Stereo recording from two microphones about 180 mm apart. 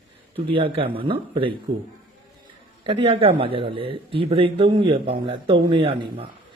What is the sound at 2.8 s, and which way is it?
Speech, 30° right (ahead or behind).